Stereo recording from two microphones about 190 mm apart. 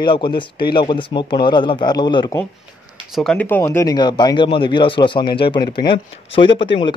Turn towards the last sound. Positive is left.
turn(degrees=25)  # may be behind; listen again after turning